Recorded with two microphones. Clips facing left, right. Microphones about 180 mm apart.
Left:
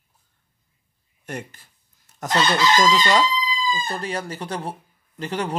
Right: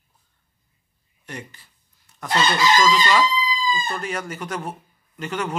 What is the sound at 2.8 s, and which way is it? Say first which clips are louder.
Speech: even; 40° left (ahead or behind).